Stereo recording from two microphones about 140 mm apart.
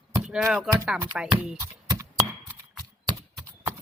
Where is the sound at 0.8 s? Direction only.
10° right (ahead or behind).